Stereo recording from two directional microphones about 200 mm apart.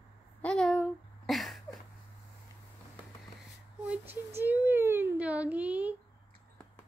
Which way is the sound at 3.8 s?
10° right (ahead or behind).